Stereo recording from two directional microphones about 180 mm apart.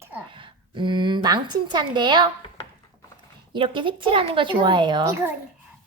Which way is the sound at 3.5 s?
25° right (ahead or behind).